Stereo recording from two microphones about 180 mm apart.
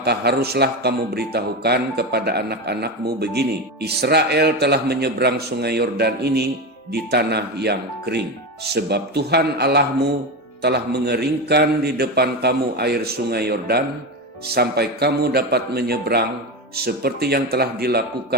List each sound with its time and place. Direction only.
0.0 s a man's voice: 65° right (ahead or behind)